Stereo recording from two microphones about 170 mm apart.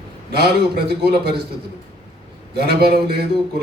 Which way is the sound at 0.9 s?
70° right (ahead or behind).